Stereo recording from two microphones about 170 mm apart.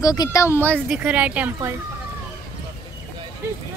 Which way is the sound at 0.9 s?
5° right (ahead or behind).